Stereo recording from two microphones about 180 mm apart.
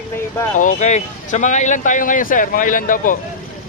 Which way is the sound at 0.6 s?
45° left (ahead or behind).